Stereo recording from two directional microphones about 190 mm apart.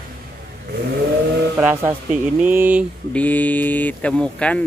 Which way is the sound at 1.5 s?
10° right (ahead or behind).